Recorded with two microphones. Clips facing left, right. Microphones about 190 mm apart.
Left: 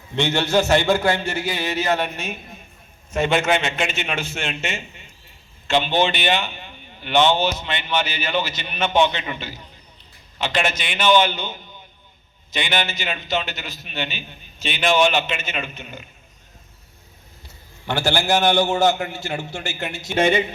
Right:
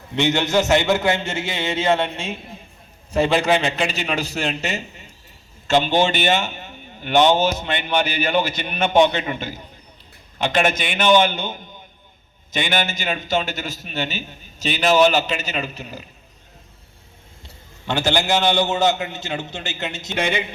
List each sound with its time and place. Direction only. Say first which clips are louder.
0.2 s a man's voice: right 1 dB; 20° right (ahead or behind); by 16.0 s 35° right (ahead or behind)
17.8 s a man's voice: right 1 dB; 20° right (ahead or behind)